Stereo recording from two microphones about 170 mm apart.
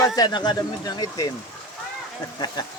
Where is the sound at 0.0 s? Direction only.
25° left (ahead or behind).